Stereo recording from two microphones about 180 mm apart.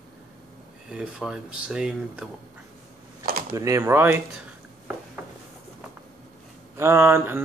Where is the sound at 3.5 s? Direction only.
15° right (ahead or behind).